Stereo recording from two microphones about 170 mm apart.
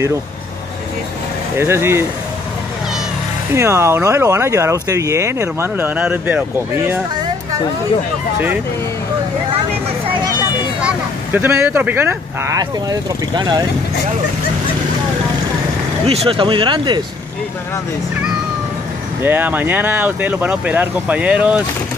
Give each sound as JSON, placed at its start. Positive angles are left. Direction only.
{"t": 1.6, "sound": "speech", "side_deg": -15}
{"t": 3.5, "sound": "speech", "side_deg": -15}
{"t": 10.8, "sound": "speech", "side_deg": -10}
{"t": 16.1, "sound": "speech", "side_deg": -35}
{"t": 19.2, "sound": "speech", "side_deg": -10}